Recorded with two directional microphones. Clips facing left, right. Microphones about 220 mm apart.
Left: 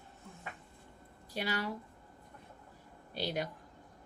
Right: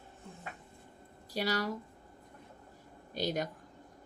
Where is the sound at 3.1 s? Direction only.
45° right (ahead or behind).